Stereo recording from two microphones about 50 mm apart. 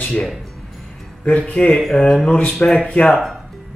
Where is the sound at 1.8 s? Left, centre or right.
Centre.